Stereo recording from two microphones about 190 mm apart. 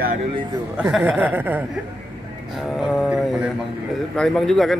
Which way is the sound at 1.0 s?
10° right (ahead or behind).